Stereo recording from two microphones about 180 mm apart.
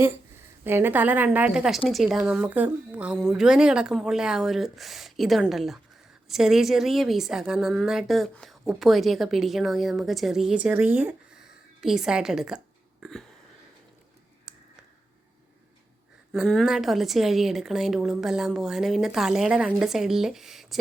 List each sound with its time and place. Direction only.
0.6 s a woman's voice: 10° right (ahead or behind)
14.5 s a sound: 5° right (ahead or behind)
16.3 s a woman's voice: centre (ahead or behind)